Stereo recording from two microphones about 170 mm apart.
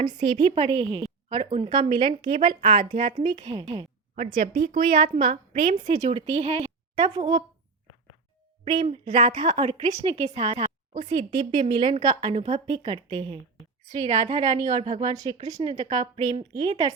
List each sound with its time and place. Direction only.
0.1 s a woman's voice: 30° right (ahead or behind)
4.9 s a woman's voice: 30° right (ahead or behind)
6.9 s speech: 25° right (ahead or behind)
8.6 s a woman's voice: 30° right (ahead or behind)
11.1 s speech: 25° right (ahead or behind)
12.3 s a woman's voice: 35° right (ahead or behind)
13.9 s a woman's voice: 40° right (ahead or behind)
15.8 s a woman's voice: 25° right (ahead or behind)